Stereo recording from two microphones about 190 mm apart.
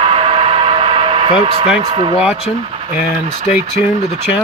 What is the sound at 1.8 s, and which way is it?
Speech, 25° right (ahead or behind).